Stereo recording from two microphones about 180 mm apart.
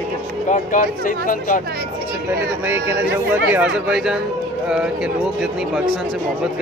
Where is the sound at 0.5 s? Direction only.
50° left (ahead or behind).